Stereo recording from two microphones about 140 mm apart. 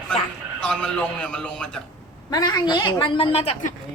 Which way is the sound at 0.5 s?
10° left (ahead or behind).